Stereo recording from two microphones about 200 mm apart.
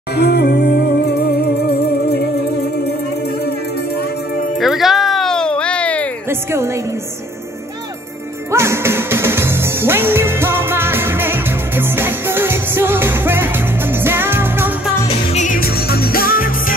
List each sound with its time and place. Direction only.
0.1 s music: 55° left (ahead or behind)
4.6 s music: centre (ahead or behind)
8.5 s music: 15° right (ahead or behind)
15.0 s music: 35° left (ahead or behind)